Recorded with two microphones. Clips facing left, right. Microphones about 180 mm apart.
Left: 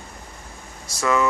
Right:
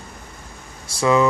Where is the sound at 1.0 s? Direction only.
20° right (ahead or behind).